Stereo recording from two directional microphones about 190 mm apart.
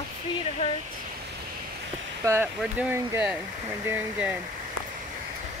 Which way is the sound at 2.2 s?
15° right (ahead or behind).